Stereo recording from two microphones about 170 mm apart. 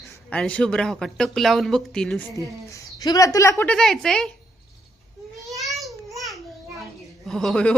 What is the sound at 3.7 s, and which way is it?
Speech, 5° left (ahead or behind).